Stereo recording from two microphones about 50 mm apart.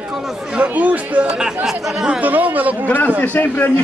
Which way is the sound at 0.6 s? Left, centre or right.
Right.